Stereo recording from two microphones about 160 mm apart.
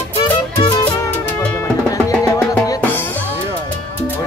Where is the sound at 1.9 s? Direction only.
20° left (ahead or behind).